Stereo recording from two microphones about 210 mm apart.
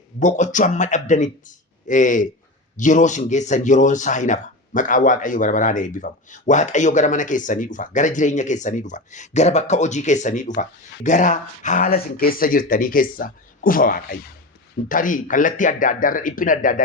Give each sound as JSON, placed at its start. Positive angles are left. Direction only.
{"t": 0.2, "sound": "speech", "side_deg": 35}